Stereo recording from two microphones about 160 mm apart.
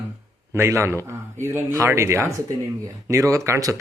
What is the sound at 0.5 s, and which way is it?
A man's voice, 15° right (ahead or behind).